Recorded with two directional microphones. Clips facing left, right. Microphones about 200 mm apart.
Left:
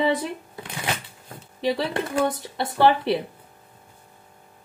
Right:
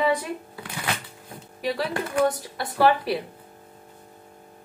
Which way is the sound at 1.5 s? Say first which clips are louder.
Left 3 dB; 25° left (ahead or behind).